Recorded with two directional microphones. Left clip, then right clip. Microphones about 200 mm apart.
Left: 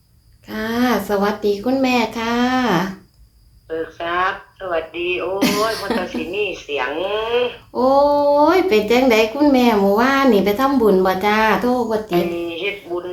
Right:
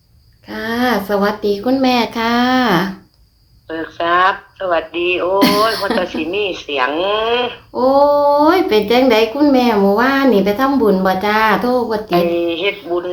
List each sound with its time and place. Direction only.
0.5 s speech: 5° right (ahead or behind)
3.7 s a sound: 45° right (ahead or behind)
5.4 s speech: 15° right (ahead or behind)
6.3 s speech: 45° right (ahead or behind)
7.7 s speech: 5° right (ahead or behind); by 12.2 s 20° right (ahead or behind)
12.3 s a sound: 40° right (ahead or behind)